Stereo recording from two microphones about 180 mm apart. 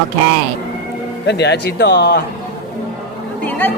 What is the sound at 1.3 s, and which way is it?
Speech, 70° left (ahead or behind).